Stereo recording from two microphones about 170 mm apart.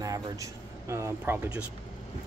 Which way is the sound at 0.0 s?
20° right (ahead or behind).